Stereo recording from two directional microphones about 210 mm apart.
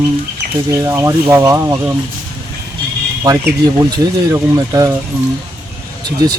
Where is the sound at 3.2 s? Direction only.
15° right (ahead or behind).